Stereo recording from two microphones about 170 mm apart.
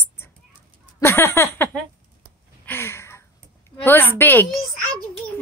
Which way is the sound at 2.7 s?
15° left (ahead or behind).